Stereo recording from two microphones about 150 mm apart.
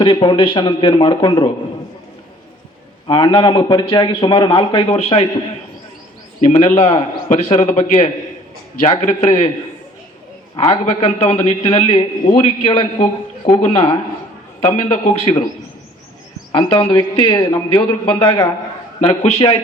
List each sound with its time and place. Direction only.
0.0 s a man's voice: 30° left (ahead or behind)
3.1 s a man's voice: 30° left (ahead or behind)
6.4 s a man's voice: 45° left (ahead or behind)
10.6 s a man's voice: 40° left (ahead or behind)
16.5 s a man's voice: 30° left (ahead or behind)
19.0 s a man's voice: 40° left (ahead or behind)